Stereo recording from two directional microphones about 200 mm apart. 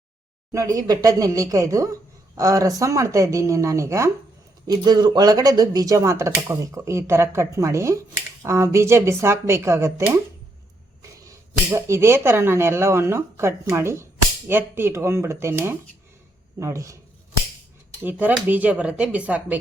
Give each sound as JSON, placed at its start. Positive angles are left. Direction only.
{"t": 0.5, "sound": "speech", "side_deg": -20}
{"t": 18.0, "sound": "speech", "side_deg": -10}